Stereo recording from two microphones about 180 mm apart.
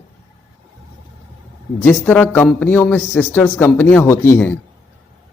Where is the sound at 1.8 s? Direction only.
10° left (ahead or behind).